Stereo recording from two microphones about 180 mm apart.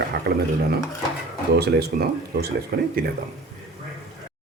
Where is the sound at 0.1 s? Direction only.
65° right (ahead or behind).